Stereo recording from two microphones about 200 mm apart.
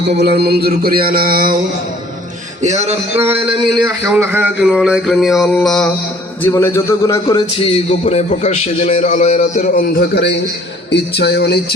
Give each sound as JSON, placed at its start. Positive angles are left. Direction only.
{"t": 0.2, "sound": "a sound", "side_deg": -55}
{"t": 2.6, "sound": "speech", "side_deg": -35}
{"t": 4.1, "sound": "music", "side_deg": -10}
{"t": 6.4, "sound": "a man's voice", "side_deg": 15}